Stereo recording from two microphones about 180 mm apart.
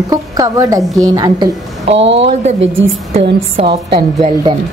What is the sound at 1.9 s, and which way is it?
Speech, 90° right.